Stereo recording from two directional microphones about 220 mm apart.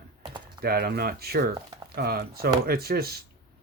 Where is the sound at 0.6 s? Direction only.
45° right (ahead or behind).